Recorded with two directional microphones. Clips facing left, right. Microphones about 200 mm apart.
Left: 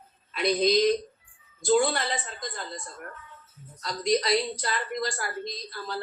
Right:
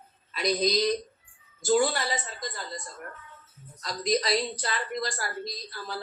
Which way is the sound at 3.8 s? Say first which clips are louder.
Left 2 dB; 35° right (ahead or behind).